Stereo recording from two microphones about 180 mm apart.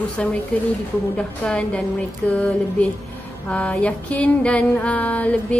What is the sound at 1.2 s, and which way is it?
Speech, 5° left (ahead or behind).